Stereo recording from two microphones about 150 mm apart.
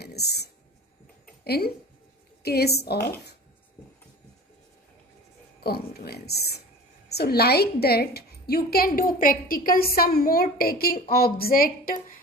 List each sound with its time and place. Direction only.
0.0 s a sound: 90° left
2.4 s a woman's voice: 90° left
5.6 s a woman's voice: 90° left; by 12.2 s 70° left (ahead or behind)